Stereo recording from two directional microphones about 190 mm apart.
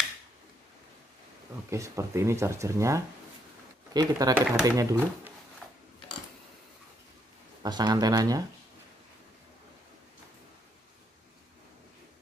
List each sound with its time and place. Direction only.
1.7 s speech: 15° right (ahead or behind)
7.6 s speech: 20° right (ahead or behind)